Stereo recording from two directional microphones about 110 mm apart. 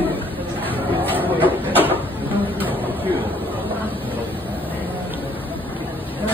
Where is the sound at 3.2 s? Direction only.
15° left (ahead or behind).